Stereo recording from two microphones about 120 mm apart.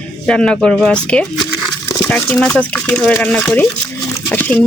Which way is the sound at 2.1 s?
5° left (ahead or behind).